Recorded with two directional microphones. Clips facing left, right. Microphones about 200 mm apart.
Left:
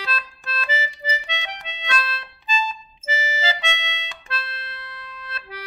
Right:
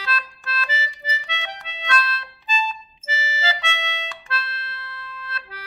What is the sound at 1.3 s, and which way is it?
Music, 15° left (ahead or behind).